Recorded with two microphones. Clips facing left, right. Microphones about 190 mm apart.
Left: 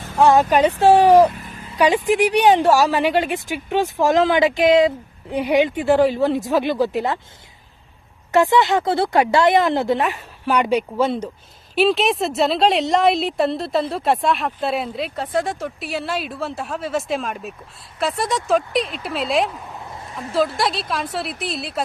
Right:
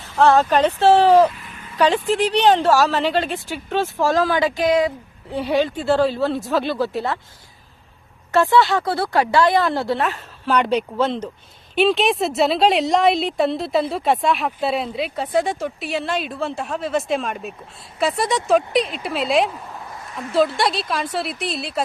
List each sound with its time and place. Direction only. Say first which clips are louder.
0.2 s speech: left 1 dB; 15° left (ahead or behind)
1.3 s a sound: left 4 dB; 40° left (ahead or behind)
1.7 s speech: left 1 dB; 10° left (ahead or behind)
8.3 s a woman's voice: left 1 dB; 20° left (ahead or behind); by 21.8 s centre (ahead or behind)